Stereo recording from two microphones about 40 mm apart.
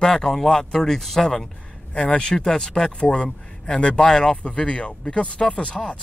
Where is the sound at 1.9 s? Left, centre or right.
Left.